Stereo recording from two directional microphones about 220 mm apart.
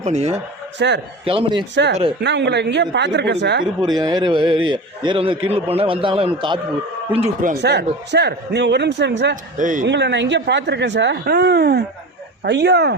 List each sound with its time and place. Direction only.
0.0 s a man's voice: 30° right (ahead or behind)
0.8 s speech: 50° right (ahead or behind)
1.2 s a man's voice: 25° right (ahead or behind)
1.7 s speech: 55° right (ahead or behind)
3.8 s a man's voice: 20° right (ahead or behind)
7.4 s speech: 50° right (ahead or behind)
9.3 s a man's voice: 35° right (ahead or behind)
9.8 s speech: 50° right (ahead or behind)